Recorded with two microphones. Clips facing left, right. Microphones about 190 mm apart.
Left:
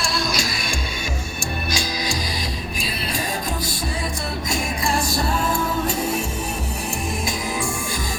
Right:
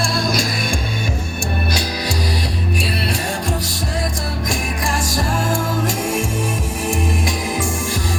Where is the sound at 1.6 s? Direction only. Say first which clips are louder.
Right 3 dB; 65° right (ahead or behind).